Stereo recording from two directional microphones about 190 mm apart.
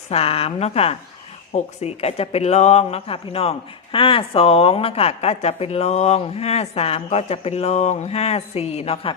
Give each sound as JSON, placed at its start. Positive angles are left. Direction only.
{"t": 0.1, "sound": "a woman's voice", "side_deg": 30}